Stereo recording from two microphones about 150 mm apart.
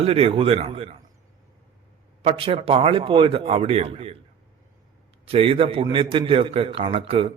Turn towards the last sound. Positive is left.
turn(degrees=-40)  # may be behind; listen again after turning